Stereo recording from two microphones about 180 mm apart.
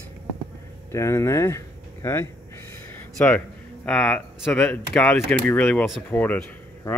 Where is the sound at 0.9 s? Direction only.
15° left (ahead or behind).